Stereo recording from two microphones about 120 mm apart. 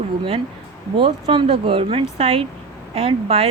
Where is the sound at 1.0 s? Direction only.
45° right (ahead or behind).